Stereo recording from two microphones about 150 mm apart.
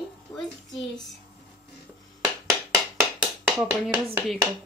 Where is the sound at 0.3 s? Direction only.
30° left (ahead or behind).